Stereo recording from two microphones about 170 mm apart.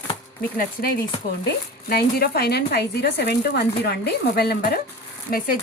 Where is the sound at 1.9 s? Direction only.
65° left (ahead or behind).